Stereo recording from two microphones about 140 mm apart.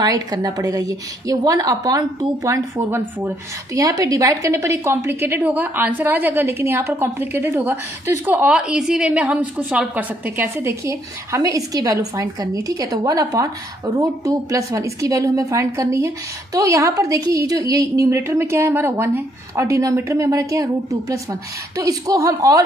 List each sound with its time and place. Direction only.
0.0 s a woman's voice: 25° right (ahead or behind)
3.8 s a woman's voice: 25° right (ahead or behind)